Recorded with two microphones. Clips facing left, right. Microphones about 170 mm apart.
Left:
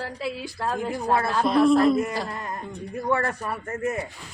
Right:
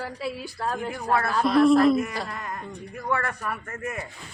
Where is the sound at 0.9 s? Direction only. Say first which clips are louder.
Left 2 dB; 25° left (ahead or behind).